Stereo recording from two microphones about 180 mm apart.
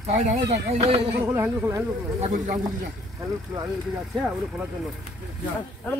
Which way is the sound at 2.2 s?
40° right (ahead or behind).